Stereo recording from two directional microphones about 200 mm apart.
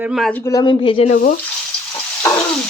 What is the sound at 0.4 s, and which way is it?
Speech, 20° left (ahead or behind).